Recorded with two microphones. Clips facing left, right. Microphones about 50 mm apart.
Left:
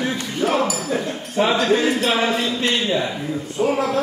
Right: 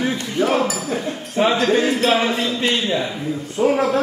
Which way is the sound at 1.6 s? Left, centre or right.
Centre.